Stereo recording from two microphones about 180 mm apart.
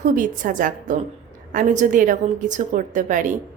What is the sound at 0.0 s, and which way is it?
A woman's voice, 45° right (ahead or behind).